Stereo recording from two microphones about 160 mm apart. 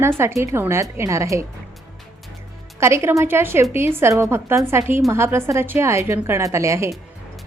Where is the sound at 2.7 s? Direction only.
15° right (ahead or behind).